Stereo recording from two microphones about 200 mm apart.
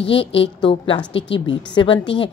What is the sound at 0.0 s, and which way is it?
A woman's voice, 25° left (ahead or behind).